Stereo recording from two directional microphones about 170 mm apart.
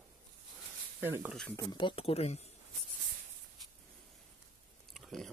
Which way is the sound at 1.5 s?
25° left (ahead or behind).